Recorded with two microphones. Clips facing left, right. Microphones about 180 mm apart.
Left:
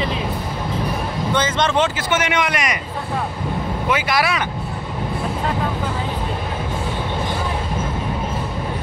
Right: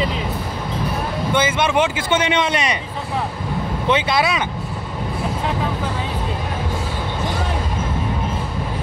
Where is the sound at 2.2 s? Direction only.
25° right (ahead or behind).